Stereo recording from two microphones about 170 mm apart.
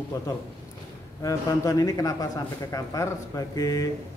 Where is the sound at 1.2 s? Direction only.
20° left (ahead or behind).